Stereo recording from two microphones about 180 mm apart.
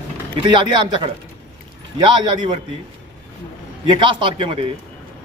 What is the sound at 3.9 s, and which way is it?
Speech, 30° right (ahead or behind).